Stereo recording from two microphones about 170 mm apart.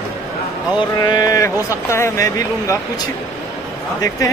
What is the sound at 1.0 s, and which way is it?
Speech, 25° left (ahead or behind).